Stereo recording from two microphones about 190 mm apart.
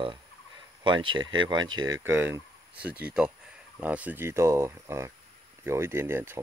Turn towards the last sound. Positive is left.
turn(degrees=-10)  # may be behind; listen again after turning